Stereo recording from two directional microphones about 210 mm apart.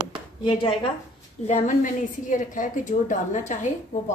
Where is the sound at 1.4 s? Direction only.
35° left (ahead or behind).